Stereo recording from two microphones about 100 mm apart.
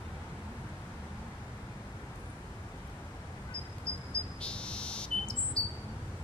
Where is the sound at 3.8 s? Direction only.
10° left (ahead or behind).